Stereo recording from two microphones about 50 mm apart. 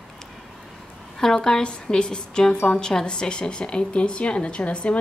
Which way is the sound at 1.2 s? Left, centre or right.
Centre.